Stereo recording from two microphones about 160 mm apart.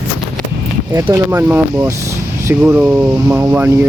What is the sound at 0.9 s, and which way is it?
Speech, 15° right (ahead or behind).